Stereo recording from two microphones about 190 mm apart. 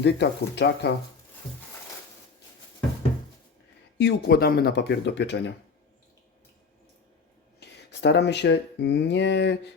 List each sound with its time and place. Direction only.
0.0 s speech: 60° left (ahead or behind)
3.9 s speech: 60° left (ahead or behind)
7.6 s speech: 65° left (ahead or behind)